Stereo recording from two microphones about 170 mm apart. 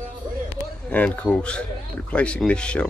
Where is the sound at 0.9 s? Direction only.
10° left (ahead or behind).